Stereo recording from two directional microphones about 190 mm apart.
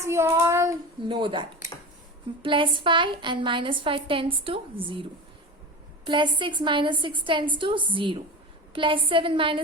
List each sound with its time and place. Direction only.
0.0 s a child's voice: 15° right (ahead or behind)
6.1 s a woman's voice: 25° right (ahead or behind)